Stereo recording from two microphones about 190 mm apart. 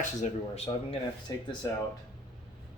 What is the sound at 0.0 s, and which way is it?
Speech, 35° left (ahead or behind).